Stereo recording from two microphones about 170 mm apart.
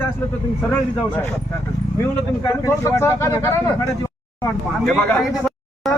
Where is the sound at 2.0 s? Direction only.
20° left (ahead or behind).